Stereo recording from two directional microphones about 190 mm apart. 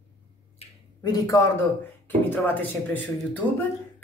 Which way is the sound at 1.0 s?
20° left (ahead or behind).